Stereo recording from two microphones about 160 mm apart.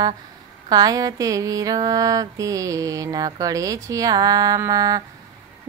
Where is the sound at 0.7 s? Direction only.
25° right (ahead or behind).